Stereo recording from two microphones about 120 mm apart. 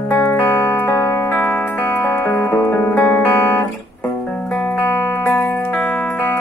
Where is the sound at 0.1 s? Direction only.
20° left (ahead or behind).